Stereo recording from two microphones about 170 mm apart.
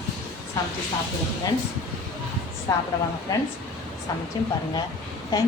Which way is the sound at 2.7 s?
15° left (ahead or behind).